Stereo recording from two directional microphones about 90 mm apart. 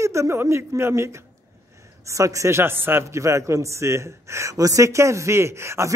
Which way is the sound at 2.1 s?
35° right (ahead or behind).